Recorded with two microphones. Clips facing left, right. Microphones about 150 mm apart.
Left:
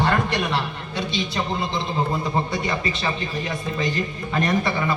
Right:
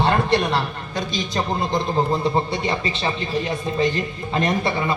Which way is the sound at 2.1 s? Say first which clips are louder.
Right 3 dB; 30° right (ahead or behind).